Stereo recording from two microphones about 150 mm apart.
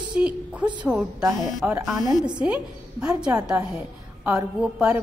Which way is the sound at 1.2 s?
25° right (ahead or behind).